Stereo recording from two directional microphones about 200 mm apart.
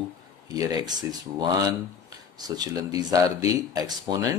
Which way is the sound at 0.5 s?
15° right (ahead or behind).